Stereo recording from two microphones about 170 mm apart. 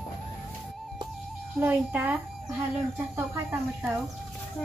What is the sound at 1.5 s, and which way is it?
Speech, 10° right (ahead or behind).